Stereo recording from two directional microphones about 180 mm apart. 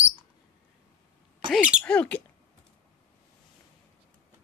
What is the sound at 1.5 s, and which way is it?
Speech, 5° right (ahead or behind).